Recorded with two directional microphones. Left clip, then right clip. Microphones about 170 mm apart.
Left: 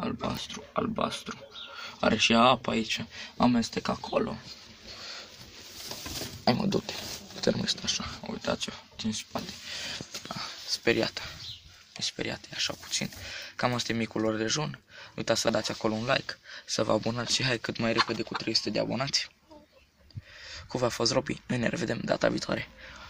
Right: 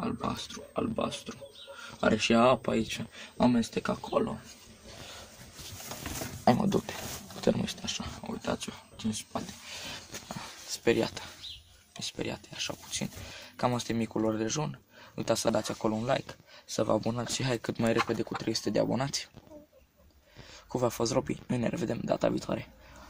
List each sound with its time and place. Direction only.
0.5 s speech: 20° left (ahead or behind)
1.8 s speech: 10° right (ahead or behind)
6.4 s speech: 10° right (ahead or behind)
20.5 s speech: 10° right (ahead or behind)